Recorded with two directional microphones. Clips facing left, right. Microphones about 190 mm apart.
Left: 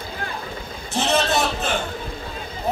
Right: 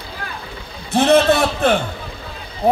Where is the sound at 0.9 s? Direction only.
60° right (ahead or behind).